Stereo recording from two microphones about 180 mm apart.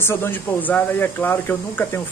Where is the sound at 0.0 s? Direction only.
15° left (ahead or behind).